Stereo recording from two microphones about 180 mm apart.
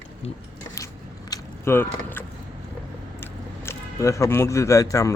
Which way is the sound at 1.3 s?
15° left (ahead or behind).